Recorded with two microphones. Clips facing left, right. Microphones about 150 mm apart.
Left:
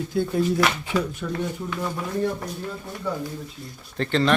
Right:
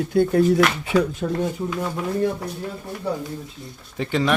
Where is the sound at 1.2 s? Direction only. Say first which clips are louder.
Right 5 dB; 35° right (ahead or behind).